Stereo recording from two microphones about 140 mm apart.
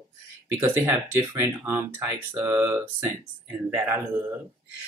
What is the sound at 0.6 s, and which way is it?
Speech, 15° right (ahead or behind).